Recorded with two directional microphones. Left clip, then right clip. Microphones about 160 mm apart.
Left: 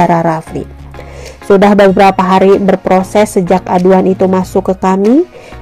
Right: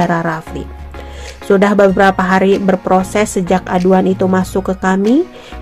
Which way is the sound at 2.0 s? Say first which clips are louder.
Left 4 dB; 15° left (ahead or behind).